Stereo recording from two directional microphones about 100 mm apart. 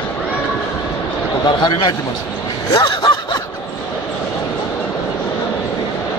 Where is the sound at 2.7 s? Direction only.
45° left (ahead or behind).